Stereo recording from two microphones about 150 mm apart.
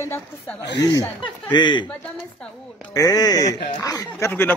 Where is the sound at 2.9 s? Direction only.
25° left (ahead or behind).